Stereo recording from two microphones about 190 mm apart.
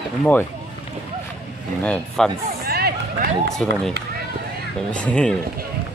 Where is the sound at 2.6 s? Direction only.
55° right (ahead or behind).